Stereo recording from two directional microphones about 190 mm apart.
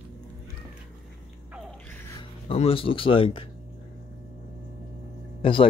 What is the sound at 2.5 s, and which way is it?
Speech, 30° left (ahead or behind).